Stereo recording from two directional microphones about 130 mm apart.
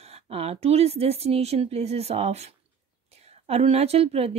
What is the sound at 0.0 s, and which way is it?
A woman's voice, 50° right (ahead or behind).